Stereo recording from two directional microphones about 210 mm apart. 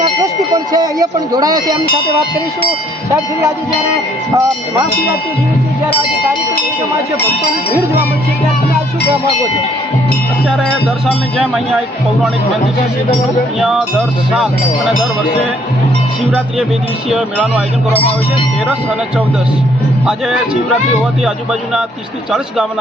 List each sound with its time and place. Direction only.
0.5 s speech: 20° right (ahead or behind)
4.4 s speech: 15° right (ahead or behind)
10.7 s speech: centre (ahead or behind)
14.3 s speech: centre (ahead or behind)
17.1 s speech: centre (ahead or behind)
20.1 s speech: 5° right (ahead or behind)